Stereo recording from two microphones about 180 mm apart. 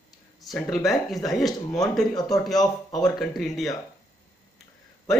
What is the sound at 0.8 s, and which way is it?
Speech, centre (ahead or behind).